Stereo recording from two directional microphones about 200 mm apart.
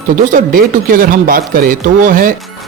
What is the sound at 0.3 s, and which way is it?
A man's voice, 45° right (ahead or behind).